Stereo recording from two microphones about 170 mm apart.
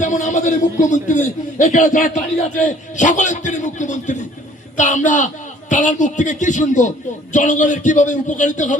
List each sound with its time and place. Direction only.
0.0 s a man's voice: 45° left (ahead or behind)